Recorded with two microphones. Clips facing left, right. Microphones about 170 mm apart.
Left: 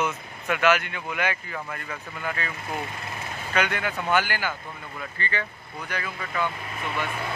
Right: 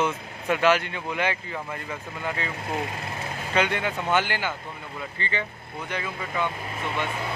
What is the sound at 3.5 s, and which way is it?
Speech, 25° right (ahead or behind).